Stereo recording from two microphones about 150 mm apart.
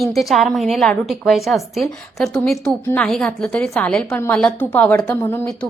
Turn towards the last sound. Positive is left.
turn(degrees=10)  # may be behind; listen again after turning